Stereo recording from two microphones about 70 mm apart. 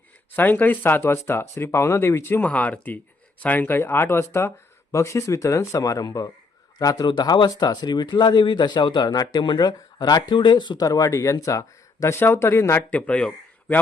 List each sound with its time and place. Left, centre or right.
0.3 s speech: left
2.5 s speech: left
12.2 s speech: left
12.9 s speech: centre